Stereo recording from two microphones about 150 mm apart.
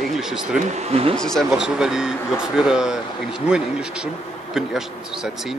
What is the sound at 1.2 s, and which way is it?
A man's voice, 5° left (ahead or behind).